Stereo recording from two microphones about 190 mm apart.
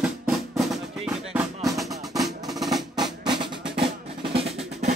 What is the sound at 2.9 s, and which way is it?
Music, 20° right (ahead or behind).